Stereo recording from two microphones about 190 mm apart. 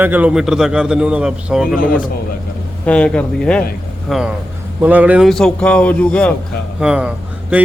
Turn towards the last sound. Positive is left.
turn(degrees=-10)  # may be behind; listen again after turning